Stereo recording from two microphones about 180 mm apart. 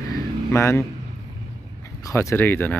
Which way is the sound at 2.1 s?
15° left (ahead or behind).